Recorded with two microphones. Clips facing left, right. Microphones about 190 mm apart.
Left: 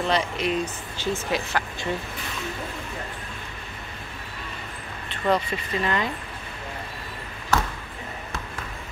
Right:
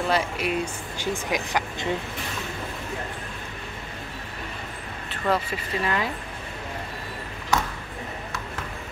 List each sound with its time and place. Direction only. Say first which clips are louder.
0.0 s speech: even; 5° right (ahead or behind)
5.2 s speech: left 2 dB; 5° right (ahead or behind)